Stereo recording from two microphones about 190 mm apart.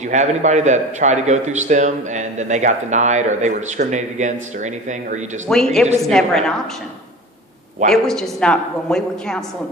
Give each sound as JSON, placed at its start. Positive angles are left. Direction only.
{"t": 0.0, "sound": "a man's voice", "side_deg": -40}
{"t": 5.5, "sound": "speech", "side_deg": 0}
{"t": 7.9, "sound": "speech", "side_deg": 0}